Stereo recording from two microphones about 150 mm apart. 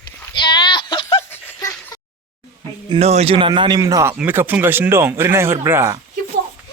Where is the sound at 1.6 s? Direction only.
20° left (ahead or behind).